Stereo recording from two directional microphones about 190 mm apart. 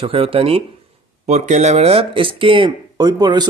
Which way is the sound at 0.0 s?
30° right (ahead or behind).